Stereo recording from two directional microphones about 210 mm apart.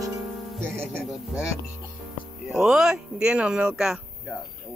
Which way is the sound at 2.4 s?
Centre (ahead or behind).